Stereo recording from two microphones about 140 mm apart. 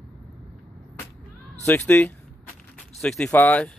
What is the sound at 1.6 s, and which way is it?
Speech, 10° left (ahead or behind).